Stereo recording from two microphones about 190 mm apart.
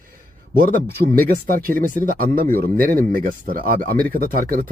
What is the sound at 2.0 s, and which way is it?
Speech, 50° right (ahead or behind).